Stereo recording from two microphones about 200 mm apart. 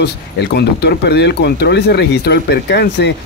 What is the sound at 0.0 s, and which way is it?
Speech, 55° left (ahead or behind).